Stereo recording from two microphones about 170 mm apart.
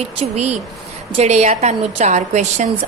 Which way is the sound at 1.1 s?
40° right (ahead or behind).